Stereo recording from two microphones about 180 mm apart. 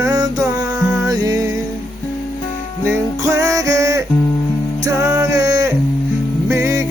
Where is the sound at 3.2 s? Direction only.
20° right (ahead or behind).